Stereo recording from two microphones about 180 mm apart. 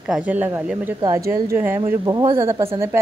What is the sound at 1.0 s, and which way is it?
A woman's voice, 20° right (ahead or behind).